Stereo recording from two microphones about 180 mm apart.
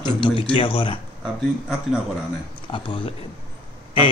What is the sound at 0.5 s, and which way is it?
Speech, 30° left (ahead or behind).